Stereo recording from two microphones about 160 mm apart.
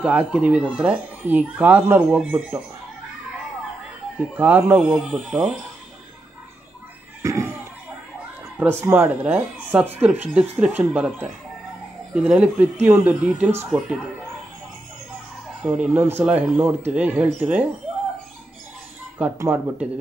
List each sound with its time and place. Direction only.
0.0 s speech: 10° right (ahead or behind)
4.2 s speech: 10° right (ahead or behind)
7.2 s a sound: 20° right (ahead or behind)
8.5 s speech: 15° right (ahead or behind)
15.6 s speech: 10° right (ahead or behind)
19.3 s speech: 15° right (ahead or behind)